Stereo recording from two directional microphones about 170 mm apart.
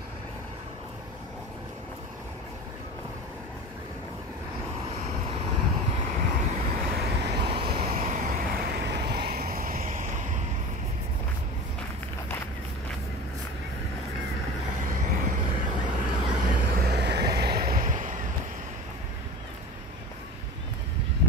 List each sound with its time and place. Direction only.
4.8 s vehicle: 35° right (ahead or behind); by 7.4 s 80° right
7.4 s vehicle: 30° right (ahead or behind)
7.9 s vehicle: 50° right (ahead or behind)
14.7 s vehicle: 45° right (ahead or behind)
15.9 s vehicle: 25° right (ahead or behind)
16.5 s vehicle: 65° right (ahead or behind)